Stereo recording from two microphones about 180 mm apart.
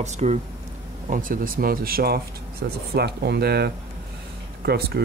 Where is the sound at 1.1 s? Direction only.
50° right (ahead or behind).